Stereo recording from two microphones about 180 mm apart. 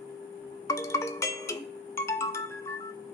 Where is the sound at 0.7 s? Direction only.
15° left (ahead or behind).